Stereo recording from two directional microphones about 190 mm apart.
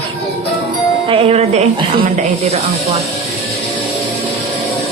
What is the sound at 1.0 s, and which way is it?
Speech, 30° right (ahead or behind).